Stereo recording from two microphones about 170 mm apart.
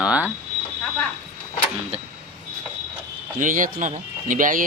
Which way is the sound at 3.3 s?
50° right (ahead or behind).